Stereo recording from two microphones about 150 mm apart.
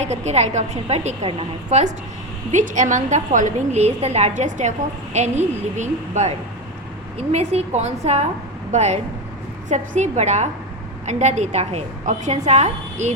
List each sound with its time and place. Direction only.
0.0 s a woman's voice: 45° right (ahead or behind)